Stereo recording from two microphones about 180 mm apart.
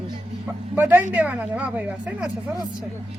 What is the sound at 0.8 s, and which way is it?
A woman's voice, 10° right (ahead or behind).